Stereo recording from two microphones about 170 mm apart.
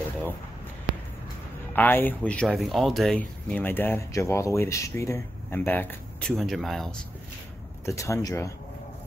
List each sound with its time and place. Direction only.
1.8 s speech: 10° left (ahead or behind)
7.8 s speech: 20° left (ahead or behind)